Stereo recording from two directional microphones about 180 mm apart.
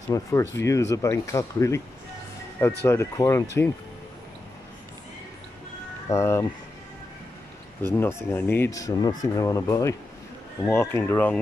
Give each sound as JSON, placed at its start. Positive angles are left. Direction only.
{"t": 0.1, "sound": "speech", "side_deg": 15}
{"t": 2.8, "sound": "speech", "side_deg": 15}
{"t": 6.0, "sound": "speech", "side_deg": 15}
{"t": 7.8, "sound": "speech", "side_deg": 15}